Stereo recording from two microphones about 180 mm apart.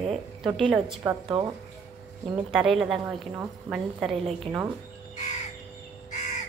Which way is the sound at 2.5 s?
5° right (ahead or behind).